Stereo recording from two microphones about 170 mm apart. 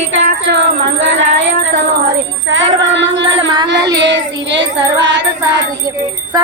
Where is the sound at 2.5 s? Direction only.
90° right.